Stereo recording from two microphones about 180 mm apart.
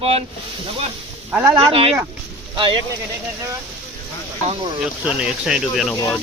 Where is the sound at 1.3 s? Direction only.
10° right (ahead or behind).